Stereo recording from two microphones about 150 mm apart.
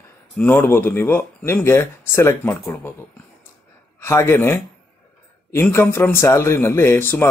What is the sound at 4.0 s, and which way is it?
Speech, 20° left (ahead or behind).